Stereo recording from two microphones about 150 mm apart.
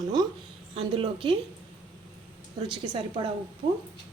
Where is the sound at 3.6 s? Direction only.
90° right.